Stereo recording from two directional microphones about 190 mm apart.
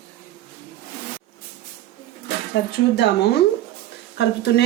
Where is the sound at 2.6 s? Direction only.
65° left (ahead or behind).